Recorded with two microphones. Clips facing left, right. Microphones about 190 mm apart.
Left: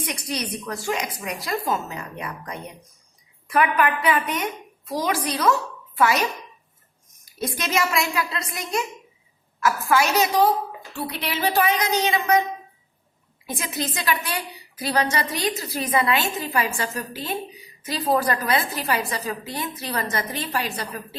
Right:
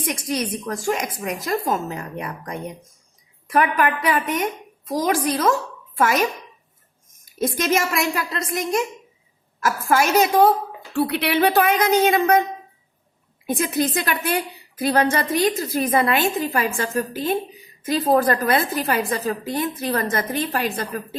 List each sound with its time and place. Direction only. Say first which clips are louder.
0.0 s a woman's voice: right 4 dB; 50° right (ahead or behind)
7.3 s a woman's voice: right 4 dB; 45° right (ahead or behind)
10.9 s a woman's voice: right 9 dB; 65° right (ahead or behind)
13.5 s a woman's voice: right 8 dB; 55° right (ahead or behind)